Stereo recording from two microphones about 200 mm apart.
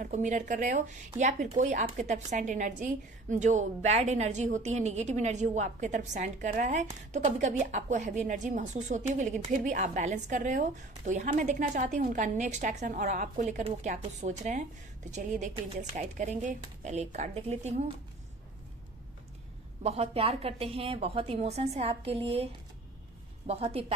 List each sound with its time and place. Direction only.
0.0 s speech: 35° right (ahead or behind)
19.8 s a woman's voice: 30° right (ahead or behind)